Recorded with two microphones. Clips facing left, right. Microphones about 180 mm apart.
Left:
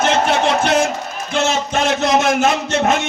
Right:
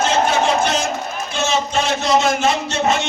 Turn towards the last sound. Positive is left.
turn(degrees=55)  # may be behind; listen again after turning